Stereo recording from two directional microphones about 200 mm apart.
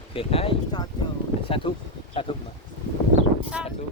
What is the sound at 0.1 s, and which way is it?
Speech, 30° left (ahead or behind).